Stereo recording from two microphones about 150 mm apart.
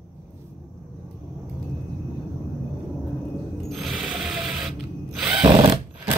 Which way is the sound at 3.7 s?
Centre (ahead or behind).